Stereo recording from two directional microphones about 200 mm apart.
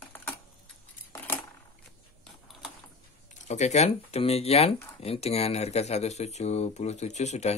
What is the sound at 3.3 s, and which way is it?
Speech, 35° left (ahead or behind).